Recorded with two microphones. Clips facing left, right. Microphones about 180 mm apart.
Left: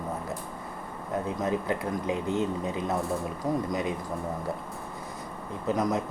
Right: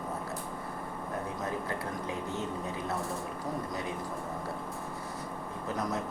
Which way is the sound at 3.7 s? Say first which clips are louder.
Left 7 dB; 15° left (ahead or behind).